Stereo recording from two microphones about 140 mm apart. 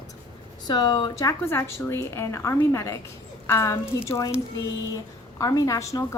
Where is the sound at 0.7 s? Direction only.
30° left (ahead or behind).